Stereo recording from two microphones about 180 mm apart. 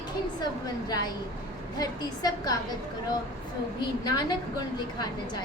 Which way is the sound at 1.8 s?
20° left (ahead or behind).